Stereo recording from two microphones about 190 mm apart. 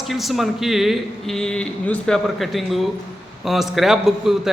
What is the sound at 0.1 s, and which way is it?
A man's voice, centre (ahead or behind).